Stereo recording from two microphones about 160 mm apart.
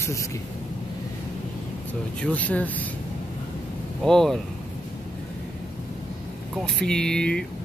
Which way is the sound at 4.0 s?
5° left (ahead or behind).